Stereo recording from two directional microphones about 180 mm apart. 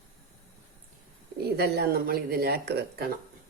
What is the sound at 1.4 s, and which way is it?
Speech, 65° right (ahead or behind).